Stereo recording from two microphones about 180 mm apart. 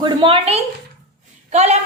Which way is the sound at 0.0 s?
30° right (ahead or behind).